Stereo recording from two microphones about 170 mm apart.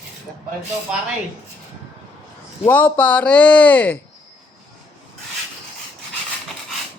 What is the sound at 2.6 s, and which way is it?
Speech, 10° left (ahead or behind).